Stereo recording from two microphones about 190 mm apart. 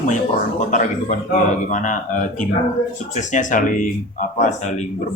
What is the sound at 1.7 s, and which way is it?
Speech, 40° left (ahead or behind).